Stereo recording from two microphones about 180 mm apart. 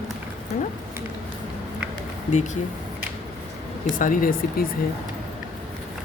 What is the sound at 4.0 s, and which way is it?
Speech, 50° left (ahead or behind).